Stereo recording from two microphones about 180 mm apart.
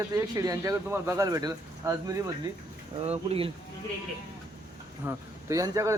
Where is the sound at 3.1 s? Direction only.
30° right (ahead or behind).